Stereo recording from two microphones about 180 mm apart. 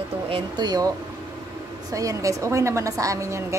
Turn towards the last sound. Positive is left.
turn(degrees=-15)  # may be behind; listen again after turning